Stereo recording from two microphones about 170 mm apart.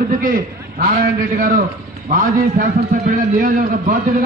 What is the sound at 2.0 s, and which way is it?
Speech, 50° right (ahead or behind).